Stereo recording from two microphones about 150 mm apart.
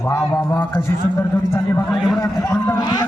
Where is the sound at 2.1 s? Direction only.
20° left (ahead or behind).